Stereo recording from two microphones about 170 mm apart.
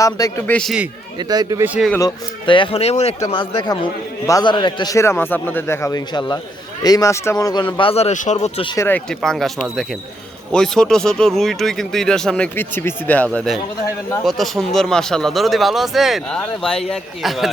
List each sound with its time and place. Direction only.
0.0 s a man's voice: 20° left (ahead or behind)
1.2 s speech: 25° right (ahead or behind)
1.6 s speech: 10° right (ahead or behind)
2.0 s a man's voice: 25° left (ahead or behind)
8.7 s a man's voice: 15° left (ahead or behind)
9.0 s speech: centre (ahead or behind)